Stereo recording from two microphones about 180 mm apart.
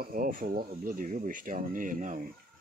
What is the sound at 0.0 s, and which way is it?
Speech, 50° right (ahead or behind).